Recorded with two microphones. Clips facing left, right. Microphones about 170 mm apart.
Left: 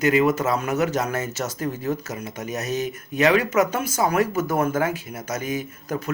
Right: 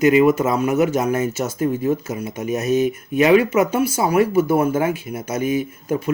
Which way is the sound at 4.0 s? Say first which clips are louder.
Right 4 dB; 10° right (ahead or behind).